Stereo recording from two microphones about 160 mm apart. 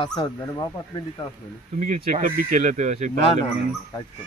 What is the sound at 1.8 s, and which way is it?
A man's voice, 60° right (ahead or behind).